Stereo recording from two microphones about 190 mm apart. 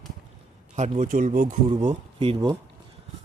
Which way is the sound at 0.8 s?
45° right (ahead or behind).